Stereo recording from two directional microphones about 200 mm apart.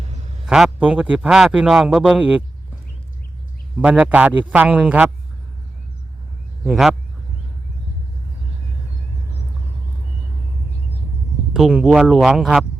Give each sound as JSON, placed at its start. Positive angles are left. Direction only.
{"t": 0.0, "sound": "a sound", "side_deg": -35}
{"t": 0.4, "sound": "a man's voice", "side_deg": -5}
{"t": 3.8, "sound": "a man's voice", "side_deg": -5}
{"t": 6.7, "sound": "a man's voice", "side_deg": 0}
{"t": 11.5, "sound": "a man's voice", "side_deg": -5}